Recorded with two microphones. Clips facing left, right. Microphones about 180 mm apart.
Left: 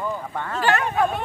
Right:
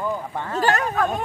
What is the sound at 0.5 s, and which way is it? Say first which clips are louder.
Speech: right 1 dB; 40° right (ahead or behind).